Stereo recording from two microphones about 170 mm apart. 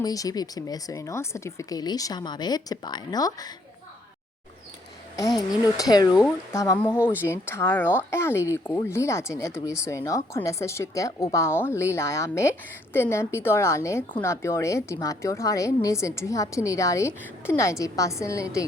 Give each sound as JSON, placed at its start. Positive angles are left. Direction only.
{"t": 0.0, "sound": "speech", "side_deg": 20}
{"t": 5.1, "sound": "speech", "side_deg": 20}